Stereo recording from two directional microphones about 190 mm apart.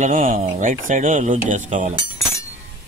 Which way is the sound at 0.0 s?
45° right (ahead or behind).